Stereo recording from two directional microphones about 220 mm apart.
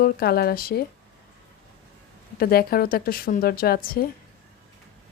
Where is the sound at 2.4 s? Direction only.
45° left (ahead or behind).